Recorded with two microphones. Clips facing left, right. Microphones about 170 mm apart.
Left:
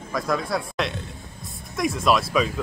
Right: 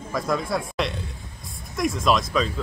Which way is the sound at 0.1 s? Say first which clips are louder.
Even; centre (ahead or behind).